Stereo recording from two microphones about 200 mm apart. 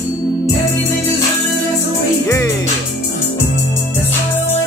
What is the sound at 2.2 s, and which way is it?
Music, 15° left (ahead or behind).